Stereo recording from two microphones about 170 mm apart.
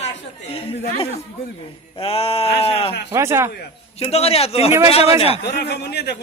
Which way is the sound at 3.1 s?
15° right (ahead or behind).